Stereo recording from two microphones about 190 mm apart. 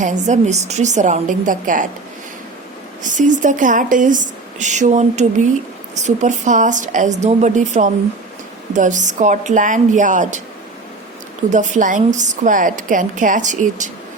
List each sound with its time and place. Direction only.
0.0 s speech: 40° right (ahead or behind)
3.0 s speech: 40° right (ahead or behind)
11.5 s speech: 40° right (ahead or behind)